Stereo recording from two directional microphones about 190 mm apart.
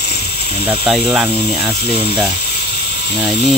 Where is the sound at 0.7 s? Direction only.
5° right (ahead or behind).